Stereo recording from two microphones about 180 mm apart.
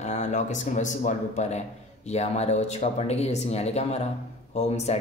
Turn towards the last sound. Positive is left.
turn(degrees=40)  # may be behind; listen again after turning